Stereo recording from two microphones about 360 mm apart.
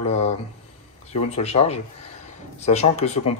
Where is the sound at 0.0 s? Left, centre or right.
Centre.